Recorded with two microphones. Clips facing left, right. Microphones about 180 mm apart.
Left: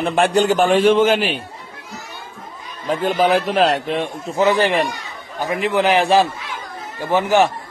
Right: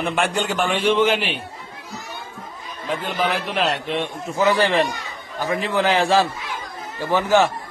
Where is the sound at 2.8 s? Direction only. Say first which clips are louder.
Left 6 dB; 45° left (ahead or behind).